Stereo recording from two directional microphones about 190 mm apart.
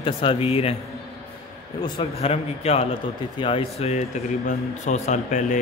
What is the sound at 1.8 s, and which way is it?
Speech, 30° left (ahead or behind).